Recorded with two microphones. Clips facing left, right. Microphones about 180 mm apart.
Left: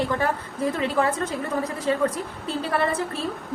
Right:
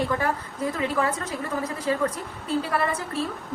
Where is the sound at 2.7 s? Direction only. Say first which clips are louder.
Left 2 dB; 30° left (ahead or behind).